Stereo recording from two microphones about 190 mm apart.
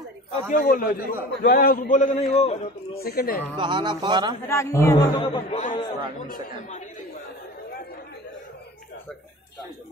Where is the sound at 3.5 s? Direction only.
25° right (ahead or behind).